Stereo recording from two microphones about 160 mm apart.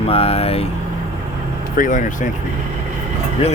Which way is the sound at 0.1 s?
35° left (ahead or behind).